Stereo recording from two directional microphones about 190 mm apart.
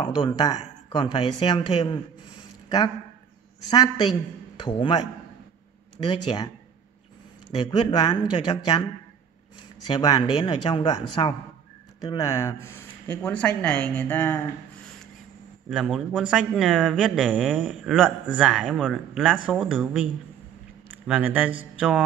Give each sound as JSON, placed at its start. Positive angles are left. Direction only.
{"t": 0.0, "sound": "speech", "side_deg": 25}
{"t": 3.7, "sound": "speech", "side_deg": 20}
{"t": 7.5, "sound": "speech", "side_deg": 25}
{"t": 9.8, "sound": "speech", "side_deg": 20}
{"t": 15.7, "sound": "speech", "side_deg": 0}
{"t": 21.1, "sound": "a man's voice", "side_deg": -5}